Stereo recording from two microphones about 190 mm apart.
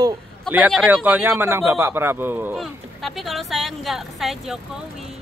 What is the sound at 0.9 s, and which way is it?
Speech, 10° right (ahead or behind).